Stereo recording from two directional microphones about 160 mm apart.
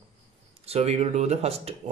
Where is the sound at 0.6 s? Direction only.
40° right (ahead or behind).